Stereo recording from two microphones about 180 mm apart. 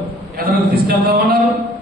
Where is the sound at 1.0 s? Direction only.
60° right (ahead or behind).